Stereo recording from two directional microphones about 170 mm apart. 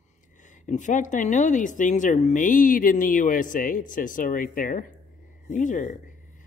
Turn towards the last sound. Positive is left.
turn(degrees=50)  # may be behind; listen again after turning